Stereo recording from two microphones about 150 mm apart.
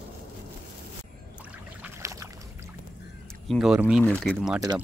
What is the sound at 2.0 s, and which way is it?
Boat, 20° right (ahead or behind).